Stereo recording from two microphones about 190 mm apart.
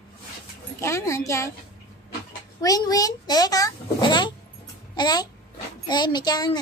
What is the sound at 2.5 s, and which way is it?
A child's voice, 20° left (ahead or behind).